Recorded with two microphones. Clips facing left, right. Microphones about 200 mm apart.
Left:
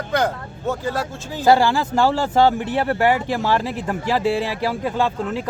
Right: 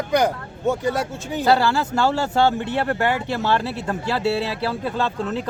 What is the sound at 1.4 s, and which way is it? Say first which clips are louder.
Speech: left 3 dB; 15° left (ahead or behind).